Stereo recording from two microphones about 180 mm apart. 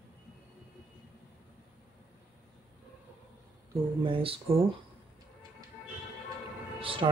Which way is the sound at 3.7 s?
30° right (ahead or behind).